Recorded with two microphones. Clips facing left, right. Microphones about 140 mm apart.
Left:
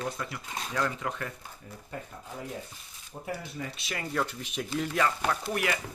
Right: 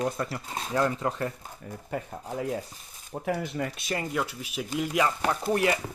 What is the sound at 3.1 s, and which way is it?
Speech, 90° right.